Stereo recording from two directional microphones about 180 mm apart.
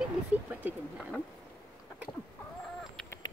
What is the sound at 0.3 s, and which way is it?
Speech, 10° right (ahead or behind).